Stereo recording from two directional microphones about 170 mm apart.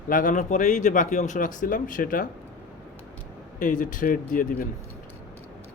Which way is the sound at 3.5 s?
50° left (ahead or behind).